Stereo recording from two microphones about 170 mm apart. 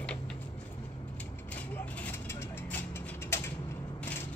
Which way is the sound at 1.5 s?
10° left (ahead or behind).